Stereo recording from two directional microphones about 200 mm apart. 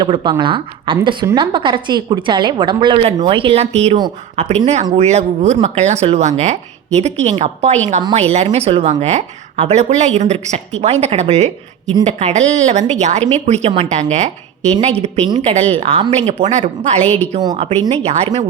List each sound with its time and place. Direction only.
0.0 s a woman's voice: 25° right (ahead or behind)
3.9 s a woman's voice: 20° right (ahead or behind)
4.6 s speech: 35° right (ahead or behind)
15.4 s speech: 35° right (ahead or behind)
17.0 s a woman's voice: 5° left (ahead or behind)
17.4 s a woman's voice: 25° right (ahead or behind)